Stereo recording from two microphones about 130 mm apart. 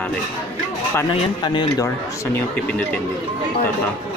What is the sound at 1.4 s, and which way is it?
Speech, 35° left (ahead or behind).